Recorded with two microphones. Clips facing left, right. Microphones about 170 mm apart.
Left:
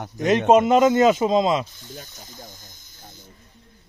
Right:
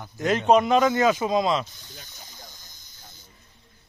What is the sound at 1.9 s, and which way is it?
Speech, 50° left (ahead or behind).